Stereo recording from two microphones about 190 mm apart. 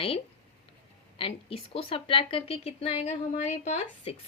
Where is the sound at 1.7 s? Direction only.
30° left (ahead or behind).